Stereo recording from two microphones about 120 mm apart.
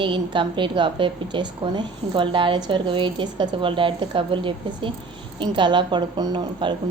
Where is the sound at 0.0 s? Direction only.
40° right (ahead or behind).